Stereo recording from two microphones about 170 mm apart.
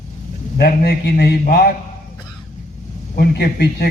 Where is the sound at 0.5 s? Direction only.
70° left (ahead or behind).